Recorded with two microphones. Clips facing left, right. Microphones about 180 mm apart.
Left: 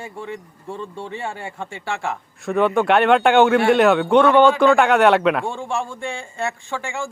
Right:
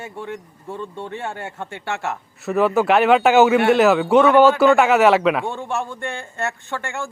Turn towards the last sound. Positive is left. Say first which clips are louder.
# left 1 dB
turn(degrees=0)  # may be behind; listen again after turning